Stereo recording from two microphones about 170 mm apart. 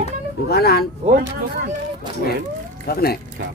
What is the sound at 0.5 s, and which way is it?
Speech, 70° left (ahead or behind).